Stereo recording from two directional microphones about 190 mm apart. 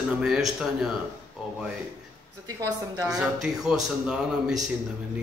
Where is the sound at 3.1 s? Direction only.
Centre (ahead or behind).